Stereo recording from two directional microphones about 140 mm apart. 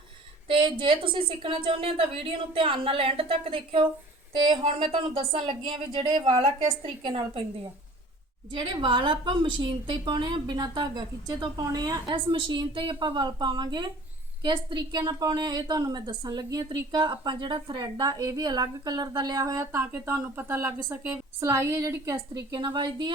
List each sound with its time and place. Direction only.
0.4 s a woman's voice: 35° right (ahead or behind)
8.5 s a woman's voice: 35° right (ahead or behind)